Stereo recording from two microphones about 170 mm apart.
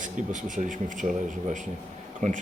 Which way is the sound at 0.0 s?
50° right (ahead or behind).